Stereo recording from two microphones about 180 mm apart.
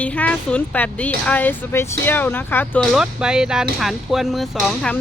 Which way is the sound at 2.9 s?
5° right (ahead or behind).